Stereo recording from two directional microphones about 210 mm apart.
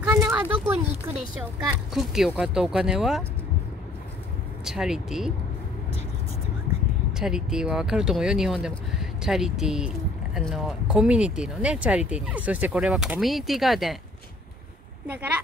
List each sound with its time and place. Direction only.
0.2 s speech: 10° right (ahead or behind)
4.6 s speech: 5° right (ahead or behind)
7.1 s speech: 5° right (ahead or behind)